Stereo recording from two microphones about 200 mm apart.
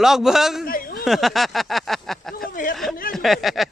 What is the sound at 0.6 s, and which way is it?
Speech, 45° left (ahead or behind).